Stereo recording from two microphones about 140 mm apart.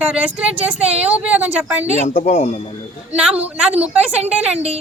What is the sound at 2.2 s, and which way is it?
Speech, 50° left (ahead or behind).